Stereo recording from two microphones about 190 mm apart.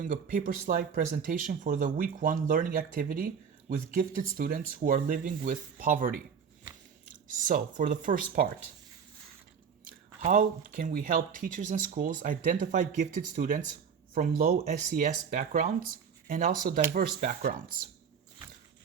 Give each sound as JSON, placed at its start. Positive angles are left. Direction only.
{"t": 0.0, "sound": "speech", "side_deg": -45}
{"t": 7.3, "sound": "speech", "side_deg": -45}
{"t": 10.2, "sound": "speech", "side_deg": -45}